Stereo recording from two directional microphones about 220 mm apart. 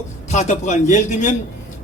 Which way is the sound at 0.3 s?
35° left (ahead or behind).